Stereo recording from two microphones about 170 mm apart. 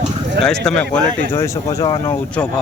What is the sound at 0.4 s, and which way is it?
Speech, 5° left (ahead or behind).